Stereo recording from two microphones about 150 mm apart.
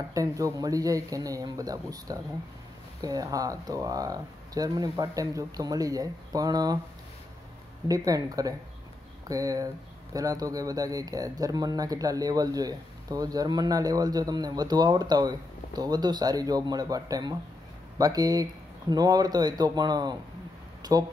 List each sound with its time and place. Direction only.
0.1 s speech: 20° right (ahead or behind)
7.9 s speech: 25° right (ahead or behind)
20.8 s a sound: 25° right (ahead or behind)